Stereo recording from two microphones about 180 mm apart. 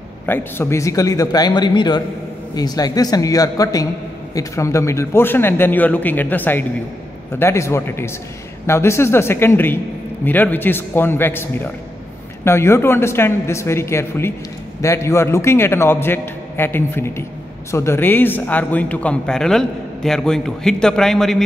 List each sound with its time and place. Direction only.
0.3 s a man's voice: 10° left (ahead or behind)